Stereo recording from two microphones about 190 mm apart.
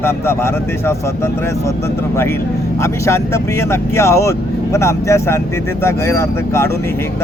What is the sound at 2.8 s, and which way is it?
Speech, 15° left (ahead or behind).